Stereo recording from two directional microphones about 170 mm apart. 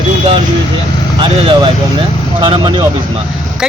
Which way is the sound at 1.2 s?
30° right (ahead or behind).